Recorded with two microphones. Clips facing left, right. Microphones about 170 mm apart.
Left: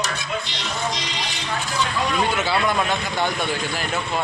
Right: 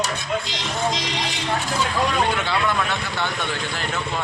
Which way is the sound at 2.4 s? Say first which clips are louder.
Left 1 dB; 10° left (ahead or behind).